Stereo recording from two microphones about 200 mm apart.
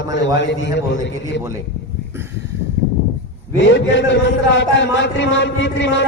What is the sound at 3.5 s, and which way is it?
A man's voice, 65° left (ahead or behind).